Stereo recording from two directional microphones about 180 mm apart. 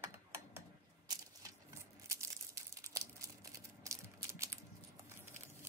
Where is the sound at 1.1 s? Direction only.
20° right (ahead or behind).